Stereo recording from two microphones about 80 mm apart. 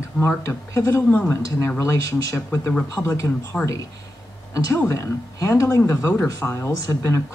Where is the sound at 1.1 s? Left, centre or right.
Left.